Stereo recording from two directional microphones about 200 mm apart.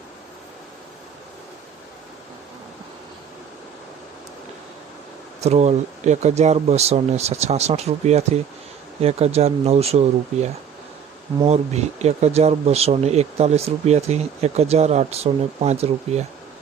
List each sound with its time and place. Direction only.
5.4 s speech: 35° right (ahead or behind)
11.3 s speech: 30° right (ahead or behind)